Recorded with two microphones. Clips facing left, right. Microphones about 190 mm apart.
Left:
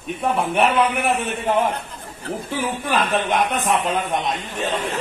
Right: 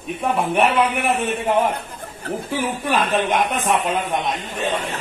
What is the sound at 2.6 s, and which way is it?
Speech, centre (ahead or behind).